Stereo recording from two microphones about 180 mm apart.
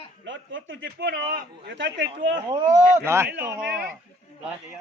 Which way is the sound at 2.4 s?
20° right (ahead or behind).